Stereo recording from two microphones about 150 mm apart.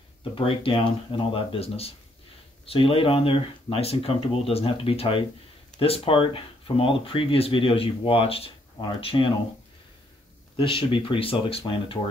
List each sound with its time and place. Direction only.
0.2 s speech: 35° left (ahead or behind)
10.5 s speech: 35° left (ahead or behind)